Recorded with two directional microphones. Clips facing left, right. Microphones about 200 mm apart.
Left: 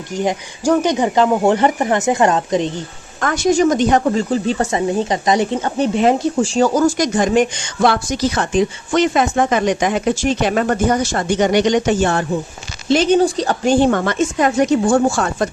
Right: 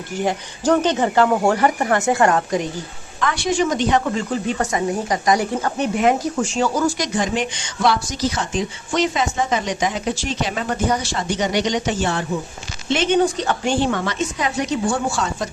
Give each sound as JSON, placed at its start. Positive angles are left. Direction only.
{"t": 0.2, "sound": "speech", "side_deg": 15}
{"t": 3.2, "sound": "speech", "side_deg": 45}
{"t": 12.9, "sound": "speech", "side_deg": 35}